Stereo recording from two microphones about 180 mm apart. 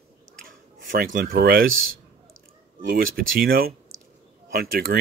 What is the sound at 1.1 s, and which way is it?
Speech, 55° right (ahead or behind).